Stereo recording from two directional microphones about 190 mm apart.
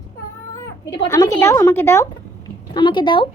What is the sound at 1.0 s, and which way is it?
Speech, 20° left (ahead or behind).